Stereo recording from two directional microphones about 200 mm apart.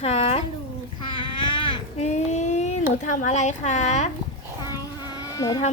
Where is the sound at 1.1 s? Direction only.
25° left (ahead or behind).